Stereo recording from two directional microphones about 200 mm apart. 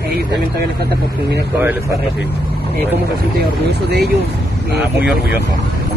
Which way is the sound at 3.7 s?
55° right (ahead or behind).